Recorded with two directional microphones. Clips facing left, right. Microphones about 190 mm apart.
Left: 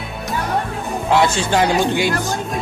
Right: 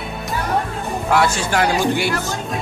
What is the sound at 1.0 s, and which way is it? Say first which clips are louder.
Speech: left 2 dB; 20° left (ahead or behind).